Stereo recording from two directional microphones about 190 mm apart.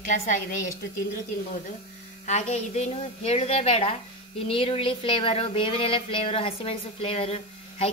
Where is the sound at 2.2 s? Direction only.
35° left (ahead or behind).